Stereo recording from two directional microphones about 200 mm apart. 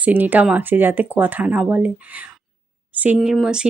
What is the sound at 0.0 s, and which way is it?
Speech, 10° right (ahead or behind).